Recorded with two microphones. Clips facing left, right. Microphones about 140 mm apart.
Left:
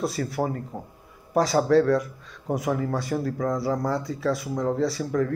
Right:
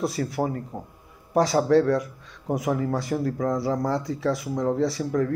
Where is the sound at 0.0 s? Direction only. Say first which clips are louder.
Right 1 dB; 15° right (ahead or behind).